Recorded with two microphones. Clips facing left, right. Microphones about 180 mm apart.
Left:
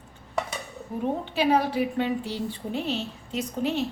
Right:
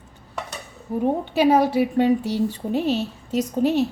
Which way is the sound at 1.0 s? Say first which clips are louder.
Right 6 dB; 45° right (ahead or behind).